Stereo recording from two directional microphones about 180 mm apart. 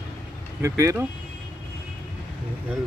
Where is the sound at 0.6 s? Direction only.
15° right (ahead or behind).